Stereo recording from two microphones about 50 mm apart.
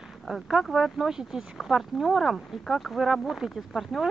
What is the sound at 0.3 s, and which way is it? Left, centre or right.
Speech, centre.